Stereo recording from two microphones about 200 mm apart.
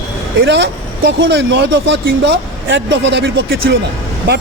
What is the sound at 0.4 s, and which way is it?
Speech, 60° right (ahead or behind).